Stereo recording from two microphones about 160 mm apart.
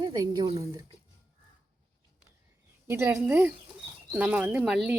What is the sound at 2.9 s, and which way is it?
A woman's voice, 15° right (ahead or behind).